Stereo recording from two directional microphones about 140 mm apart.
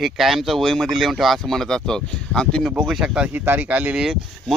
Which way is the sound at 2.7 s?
5° right (ahead or behind).